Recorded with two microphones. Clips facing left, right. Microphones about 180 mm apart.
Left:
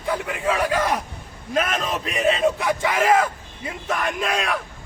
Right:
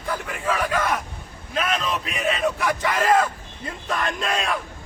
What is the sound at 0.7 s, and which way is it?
Speech, 35° left (ahead or behind).